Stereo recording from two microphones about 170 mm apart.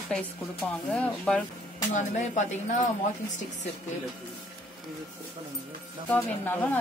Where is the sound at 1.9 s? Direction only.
45° left (ahead or behind).